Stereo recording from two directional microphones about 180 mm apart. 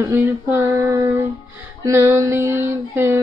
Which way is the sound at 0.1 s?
15° right (ahead or behind).